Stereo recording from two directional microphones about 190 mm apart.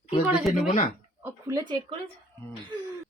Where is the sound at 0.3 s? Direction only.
5° right (ahead or behind).